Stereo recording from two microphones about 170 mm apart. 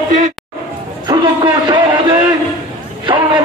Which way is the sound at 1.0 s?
25° right (ahead or behind).